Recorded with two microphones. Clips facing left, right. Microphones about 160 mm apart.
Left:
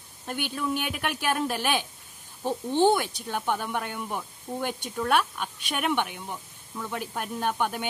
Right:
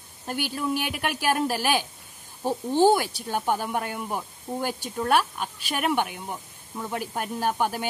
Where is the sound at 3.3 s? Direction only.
40° right (ahead or behind).